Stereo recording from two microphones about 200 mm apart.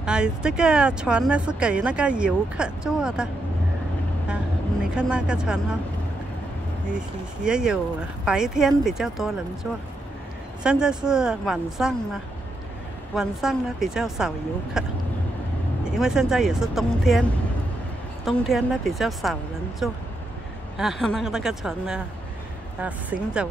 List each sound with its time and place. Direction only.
0.0 s speech: 5° right (ahead or behind)
4.9 s speech: 5° right (ahead or behind)
7.4 s speech: 5° right (ahead or behind)
18.2 s a woman's voice: centre (ahead or behind)